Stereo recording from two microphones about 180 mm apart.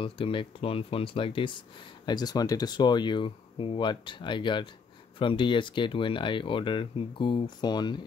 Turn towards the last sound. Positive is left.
turn(degrees=25)  # may be behind; listen again after turning